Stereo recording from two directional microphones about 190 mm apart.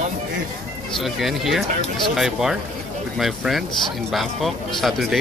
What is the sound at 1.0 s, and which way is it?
Speech, centre (ahead or behind).